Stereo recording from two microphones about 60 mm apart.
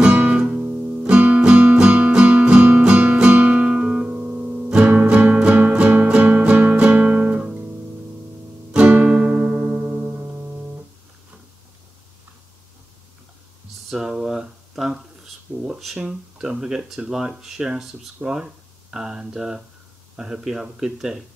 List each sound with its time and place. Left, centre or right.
0.0 s music: centre
0.4 s music: centre
1.0 s guitar: centre
4.6 s music: centre
8.7 s music: centre
13.8 s a sound: centre
16.0 s speech: centre